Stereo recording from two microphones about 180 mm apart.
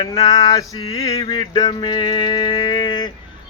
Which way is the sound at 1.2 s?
30° left (ahead or behind).